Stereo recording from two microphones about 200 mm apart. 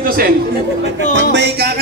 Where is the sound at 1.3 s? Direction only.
55° right (ahead or behind).